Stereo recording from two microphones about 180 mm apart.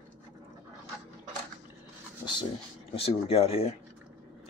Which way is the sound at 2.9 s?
30° left (ahead or behind).